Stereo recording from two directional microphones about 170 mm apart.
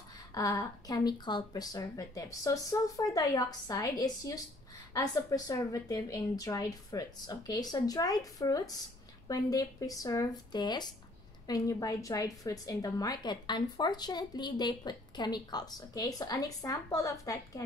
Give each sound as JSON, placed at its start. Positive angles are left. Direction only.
{"t": 0.3, "sound": "a woman's voice", "side_deg": 20}